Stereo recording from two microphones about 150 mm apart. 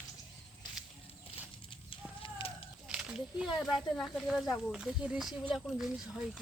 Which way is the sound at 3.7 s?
Centre (ahead or behind).